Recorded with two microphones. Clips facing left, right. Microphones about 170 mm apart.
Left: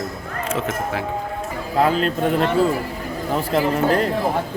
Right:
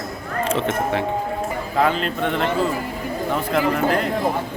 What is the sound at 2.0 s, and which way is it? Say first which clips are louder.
A man's voice: left 3 dB; 40° left (ahead or behind).